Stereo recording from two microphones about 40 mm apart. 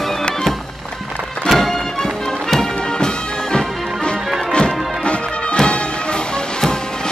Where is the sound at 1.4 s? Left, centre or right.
Centre.